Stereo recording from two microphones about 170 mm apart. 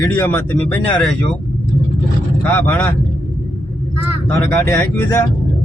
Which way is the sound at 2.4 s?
10° left (ahead or behind).